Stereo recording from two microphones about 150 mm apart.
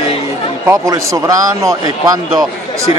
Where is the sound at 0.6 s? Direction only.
20° right (ahead or behind).